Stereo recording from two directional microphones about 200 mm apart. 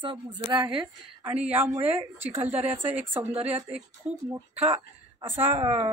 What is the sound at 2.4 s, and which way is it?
Speech, 30° right (ahead or behind).